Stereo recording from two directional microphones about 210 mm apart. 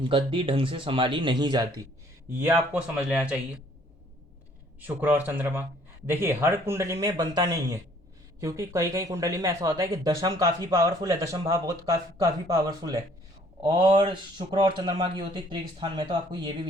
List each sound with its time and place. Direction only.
0.0 s speech: 25° right (ahead or behind)
2.3 s speech: 10° right (ahead or behind)
4.8 s speech: 10° right (ahead or behind)